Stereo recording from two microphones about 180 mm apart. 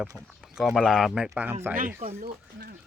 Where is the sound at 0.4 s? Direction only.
Centre (ahead or behind).